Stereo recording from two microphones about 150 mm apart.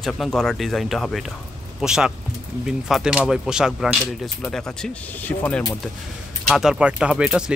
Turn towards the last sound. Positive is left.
turn(degrees=-5)  # may be behind; listen again after turning